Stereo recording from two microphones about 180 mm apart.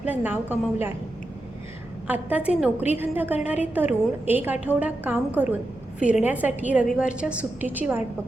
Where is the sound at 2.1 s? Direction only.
10° right (ahead or behind).